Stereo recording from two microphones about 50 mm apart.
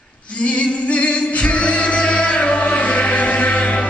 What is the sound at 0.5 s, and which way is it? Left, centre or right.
Music, left.